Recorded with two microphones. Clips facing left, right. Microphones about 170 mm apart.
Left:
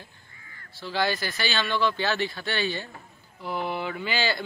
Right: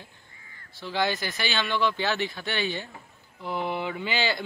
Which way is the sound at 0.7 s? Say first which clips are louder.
Even; 20° right (ahead or behind).